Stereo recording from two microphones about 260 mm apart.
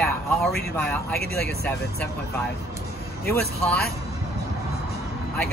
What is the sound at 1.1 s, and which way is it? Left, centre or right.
Speech, left.